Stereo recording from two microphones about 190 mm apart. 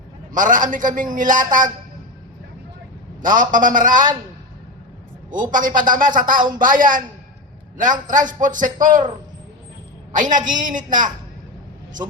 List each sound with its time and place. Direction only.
0.3 s a man's voice: 45° right (ahead or behind)
3.2 s a man's voice: 45° right (ahead or behind)
5.3 s a man's voice: 45° right (ahead or behind)
10.3 s a man's voice: 45° right (ahead or behind)